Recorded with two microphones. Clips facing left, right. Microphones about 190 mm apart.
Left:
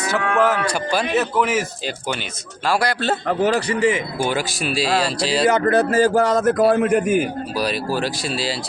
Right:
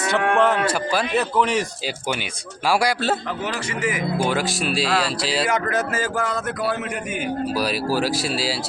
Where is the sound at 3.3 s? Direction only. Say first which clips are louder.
Left 9 dB; 50° left (ahead or behind).